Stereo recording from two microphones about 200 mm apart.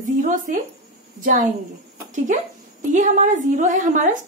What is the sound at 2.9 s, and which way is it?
A woman's voice, 40° right (ahead or behind).